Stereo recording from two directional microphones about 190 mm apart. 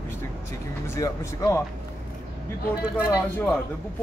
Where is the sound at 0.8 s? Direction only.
15° left (ahead or behind).